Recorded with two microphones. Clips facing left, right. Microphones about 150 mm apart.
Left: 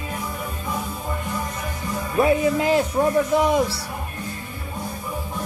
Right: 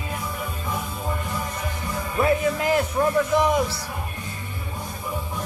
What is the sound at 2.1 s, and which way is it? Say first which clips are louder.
Speech: left 3 dB; 25° left (ahead or behind).